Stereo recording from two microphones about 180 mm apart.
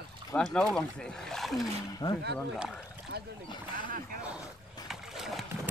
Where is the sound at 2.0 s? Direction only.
20° left (ahead or behind).